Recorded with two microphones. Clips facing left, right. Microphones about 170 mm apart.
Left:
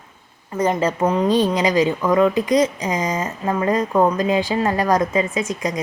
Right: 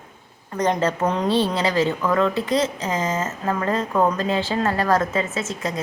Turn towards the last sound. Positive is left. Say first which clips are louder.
# left 3 dB
turn(degrees=15)  # may be behind; listen again after turning